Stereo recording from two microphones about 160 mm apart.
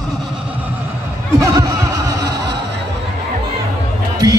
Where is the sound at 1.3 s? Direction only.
20° right (ahead or behind).